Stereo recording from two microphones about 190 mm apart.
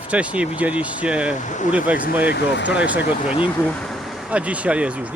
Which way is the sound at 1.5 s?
40° left (ahead or behind).